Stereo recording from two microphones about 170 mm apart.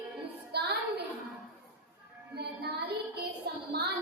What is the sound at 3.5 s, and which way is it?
Music, 70° right (ahead or behind).